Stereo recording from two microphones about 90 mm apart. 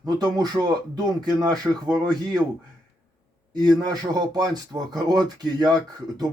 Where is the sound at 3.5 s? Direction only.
50° right (ahead or behind).